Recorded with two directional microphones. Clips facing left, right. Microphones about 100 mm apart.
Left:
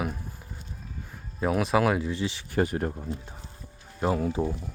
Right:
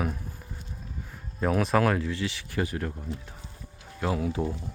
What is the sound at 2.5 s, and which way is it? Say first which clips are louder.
Speech: left 5 dB; 35° left (ahead or behind).